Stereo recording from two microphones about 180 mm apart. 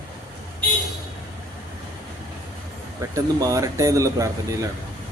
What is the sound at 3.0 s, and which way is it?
Speech, 20° right (ahead or behind).